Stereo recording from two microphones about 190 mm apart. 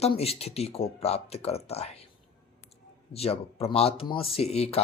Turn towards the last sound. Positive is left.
turn(degrees=35)  # may be behind; listen again after turning